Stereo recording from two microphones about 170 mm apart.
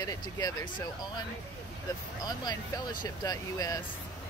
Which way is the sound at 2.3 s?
25° left (ahead or behind).